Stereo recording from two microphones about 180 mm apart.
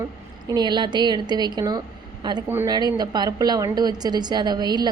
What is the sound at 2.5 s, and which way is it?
Speech, 10° right (ahead or behind).